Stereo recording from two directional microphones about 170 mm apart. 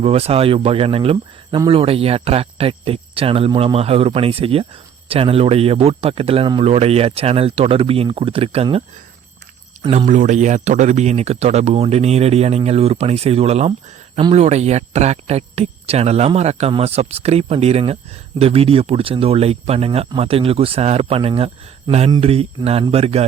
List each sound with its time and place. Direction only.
0.0 s speech: 35° right (ahead or behind)
9.7 s a sound: 40° right (ahead or behind)
10.1 s speech: 45° right (ahead or behind)